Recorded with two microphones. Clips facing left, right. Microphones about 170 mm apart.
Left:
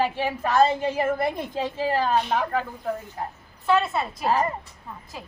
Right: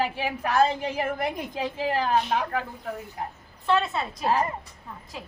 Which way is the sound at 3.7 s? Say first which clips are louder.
Left 2 dB; 5° left (ahead or behind).